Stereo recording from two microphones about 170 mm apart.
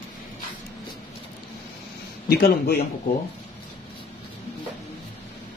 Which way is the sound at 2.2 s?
65° left (ahead or behind).